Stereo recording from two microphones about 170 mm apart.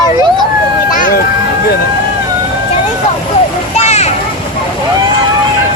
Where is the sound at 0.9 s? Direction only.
55° left (ahead or behind).